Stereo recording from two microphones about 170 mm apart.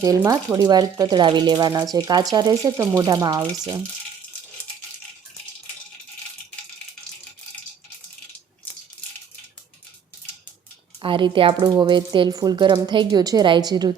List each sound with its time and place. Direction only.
0.2 s speech: 20° right (ahead or behind)
11.0 s speech: 30° right (ahead or behind)